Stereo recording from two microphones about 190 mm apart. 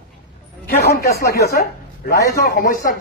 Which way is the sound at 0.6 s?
55° left (ahead or behind).